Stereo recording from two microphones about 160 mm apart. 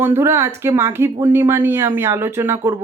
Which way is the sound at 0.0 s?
15° right (ahead or behind).